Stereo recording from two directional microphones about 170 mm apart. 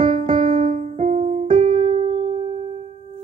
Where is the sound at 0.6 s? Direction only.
45° right (ahead or behind).